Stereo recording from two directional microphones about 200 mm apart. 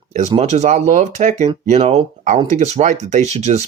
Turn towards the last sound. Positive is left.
turn(degrees=-35)  # may be behind; listen again after turning